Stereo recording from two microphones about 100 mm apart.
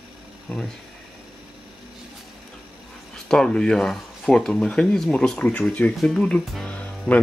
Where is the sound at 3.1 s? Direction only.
5° left (ahead or behind).